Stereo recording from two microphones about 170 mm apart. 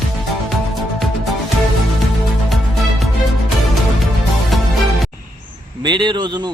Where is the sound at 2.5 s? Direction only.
Centre (ahead or behind).